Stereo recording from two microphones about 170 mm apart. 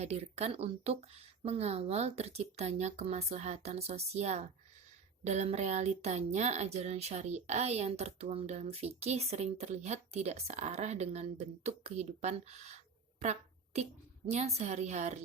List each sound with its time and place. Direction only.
0.0 s speech: 40° right (ahead or behind)